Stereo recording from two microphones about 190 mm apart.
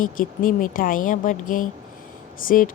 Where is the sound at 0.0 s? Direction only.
45° left (ahead or behind).